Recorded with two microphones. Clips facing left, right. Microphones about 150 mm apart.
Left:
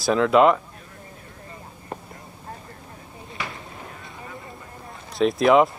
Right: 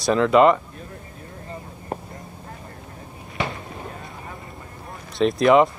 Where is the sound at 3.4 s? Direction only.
25° right (ahead or behind).